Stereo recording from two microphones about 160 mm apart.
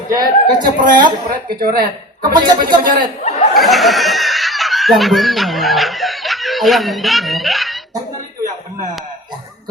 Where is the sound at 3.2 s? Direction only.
45° left (ahead or behind).